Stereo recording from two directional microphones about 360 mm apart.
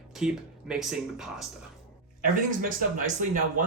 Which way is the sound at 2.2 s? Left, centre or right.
Right.